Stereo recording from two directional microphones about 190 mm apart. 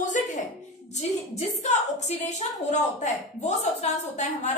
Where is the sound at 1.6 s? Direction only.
35° left (ahead or behind).